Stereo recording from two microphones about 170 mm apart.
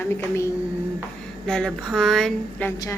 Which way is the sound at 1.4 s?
5° left (ahead or behind).